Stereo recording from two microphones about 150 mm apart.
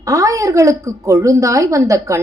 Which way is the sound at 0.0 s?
25° right (ahead or behind).